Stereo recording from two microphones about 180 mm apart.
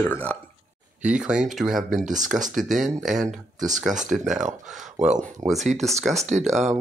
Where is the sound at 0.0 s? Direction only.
10° left (ahead or behind).